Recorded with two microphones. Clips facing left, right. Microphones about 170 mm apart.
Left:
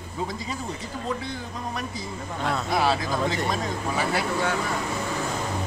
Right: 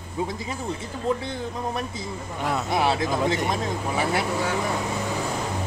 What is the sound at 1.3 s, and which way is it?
Speech, 25° right (ahead or behind).